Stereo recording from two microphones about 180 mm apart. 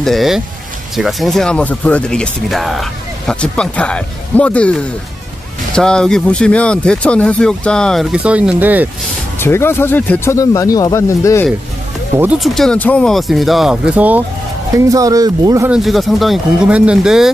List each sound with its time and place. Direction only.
0.0 s speech: centre (ahead or behind)
9.4 s speech: 15° left (ahead or behind)
12.5 s speech: 5° left (ahead or behind)
14.9 s speech: 20° right (ahead or behind)
15.7 s speech: centre (ahead or behind)